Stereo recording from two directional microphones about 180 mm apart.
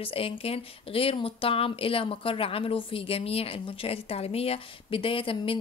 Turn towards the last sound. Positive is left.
turn(degrees=30)  # may be behind; listen again after turning